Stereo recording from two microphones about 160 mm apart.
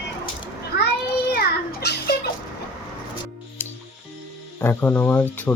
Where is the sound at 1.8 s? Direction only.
90° left.